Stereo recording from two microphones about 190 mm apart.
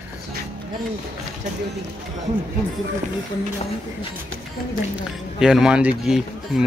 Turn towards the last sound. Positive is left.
turn(degrees=-5)  # may be behind; listen again after turning